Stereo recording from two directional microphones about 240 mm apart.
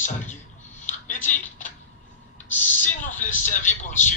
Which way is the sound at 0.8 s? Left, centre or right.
Left.